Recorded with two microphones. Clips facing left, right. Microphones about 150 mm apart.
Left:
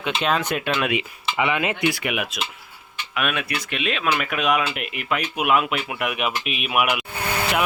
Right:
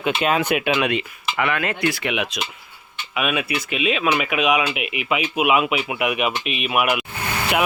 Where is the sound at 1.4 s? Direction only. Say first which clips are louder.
Even; 15° left (ahead or behind).